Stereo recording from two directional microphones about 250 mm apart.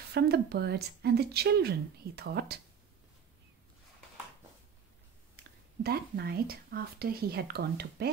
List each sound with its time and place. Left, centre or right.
0.1 s speech: right
5.3 s speech: right